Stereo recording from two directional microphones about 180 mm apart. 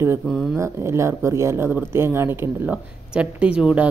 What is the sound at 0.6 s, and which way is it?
A woman's voice, 15° right (ahead or behind).